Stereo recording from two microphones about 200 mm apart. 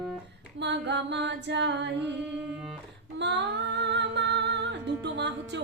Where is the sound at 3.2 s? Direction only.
60° right (ahead or behind).